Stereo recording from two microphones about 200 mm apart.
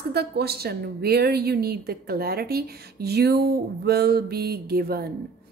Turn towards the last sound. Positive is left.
turn(degrees=-50)  # may be behind; listen again after turning